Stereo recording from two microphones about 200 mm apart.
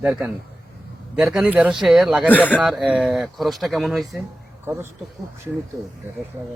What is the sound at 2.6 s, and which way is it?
Speech, 5° right (ahead or behind).